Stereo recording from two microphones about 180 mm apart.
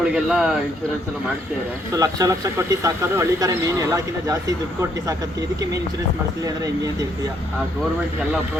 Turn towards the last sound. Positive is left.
turn(degrees=-20)  # may be behind; listen again after turning